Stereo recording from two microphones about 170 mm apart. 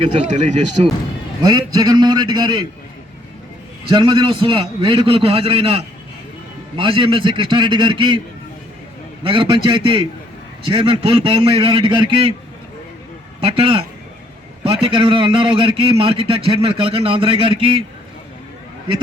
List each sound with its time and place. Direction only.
0.2 s speech: 45° right (ahead or behind)
1.4 s a man's voice: 25° right (ahead or behind)
3.8 s a man's voice: 30° right (ahead or behind)
9.2 s a man's voice: 30° right (ahead or behind)
13.4 s a man's voice: 30° right (ahead or behind)